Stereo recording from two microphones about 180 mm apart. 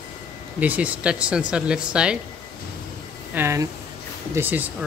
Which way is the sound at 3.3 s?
15° right (ahead or behind).